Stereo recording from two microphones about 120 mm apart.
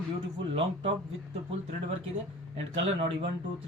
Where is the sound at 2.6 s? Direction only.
55° right (ahead or behind).